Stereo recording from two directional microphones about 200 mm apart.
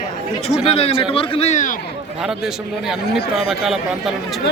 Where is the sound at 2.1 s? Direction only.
Centre (ahead or behind).